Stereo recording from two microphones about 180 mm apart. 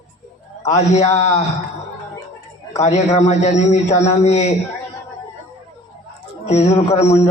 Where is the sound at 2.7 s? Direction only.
40° left (ahead or behind).